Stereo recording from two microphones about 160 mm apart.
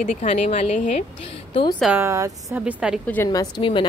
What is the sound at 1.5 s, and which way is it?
Speech, 35° left (ahead or behind).